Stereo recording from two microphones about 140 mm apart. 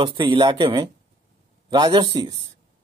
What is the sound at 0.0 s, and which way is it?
A man's voice, 35° right (ahead or behind).